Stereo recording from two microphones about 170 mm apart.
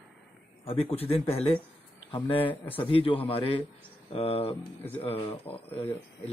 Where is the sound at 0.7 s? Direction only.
35° left (ahead or behind).